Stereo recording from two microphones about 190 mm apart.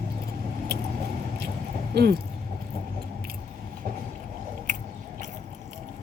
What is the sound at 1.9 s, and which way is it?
Speech, 60° right (ahead or behind).